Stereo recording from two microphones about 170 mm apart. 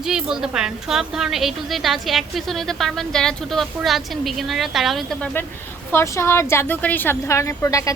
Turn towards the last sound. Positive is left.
turn(degrees=20)  # may be behind; listen again after turning